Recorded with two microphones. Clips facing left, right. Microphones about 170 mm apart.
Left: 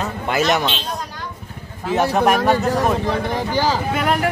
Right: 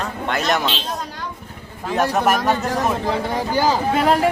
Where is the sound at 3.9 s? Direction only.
30° right (ahead or behind).